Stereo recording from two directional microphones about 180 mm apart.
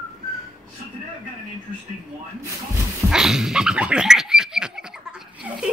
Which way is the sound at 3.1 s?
5° right (ahead or behind).